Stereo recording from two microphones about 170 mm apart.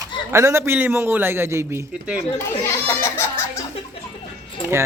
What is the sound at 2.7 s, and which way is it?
Music, 15° left (ahead or behind).